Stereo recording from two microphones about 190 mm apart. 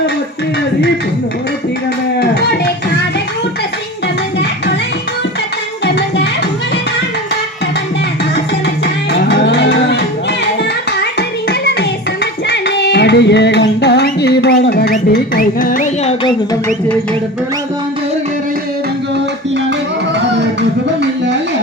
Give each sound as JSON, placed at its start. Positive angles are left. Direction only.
{"t": 5.8, "sound": "music", "side_deg": 60}
{"t": 9.1, "sound": "cattle", "side_deg": 65}
{"t": 11.0, "sound": "music", "side_deg": 60}
{"t": 20.1, "sound": "music", "side_deg": -65}